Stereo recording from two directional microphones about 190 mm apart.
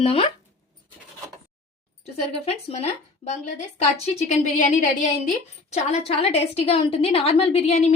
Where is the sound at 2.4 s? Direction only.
30° left (ahead or behind).